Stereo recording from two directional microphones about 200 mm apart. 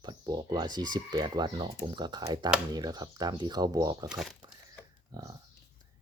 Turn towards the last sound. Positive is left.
turn(degrees=-20)  # may be behind; listen again after turning